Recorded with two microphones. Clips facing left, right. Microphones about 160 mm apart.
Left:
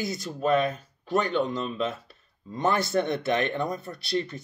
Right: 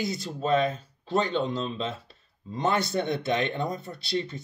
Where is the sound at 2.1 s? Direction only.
25° right (ahead or behind).